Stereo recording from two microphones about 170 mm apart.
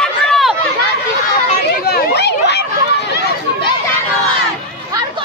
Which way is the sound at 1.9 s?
80° left.